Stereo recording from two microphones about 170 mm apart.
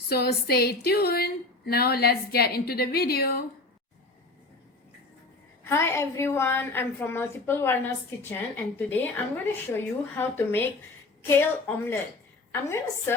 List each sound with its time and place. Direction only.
0.1 s speech: 65° left (ahead or behind)
5.6 s a woman's voice: 15° left (ahead or behind)